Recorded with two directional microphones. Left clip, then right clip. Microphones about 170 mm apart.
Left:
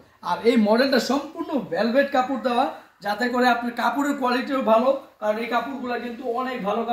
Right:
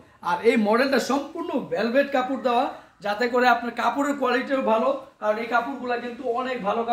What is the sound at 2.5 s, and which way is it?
Speech, 40° right (ahead or behind).